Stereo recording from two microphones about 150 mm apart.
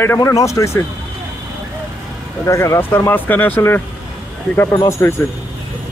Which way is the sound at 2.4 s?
20° left (ahead or behind).